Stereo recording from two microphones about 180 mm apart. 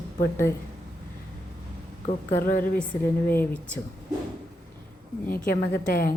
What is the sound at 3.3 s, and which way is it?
Speech, 10° left (ahead or behind).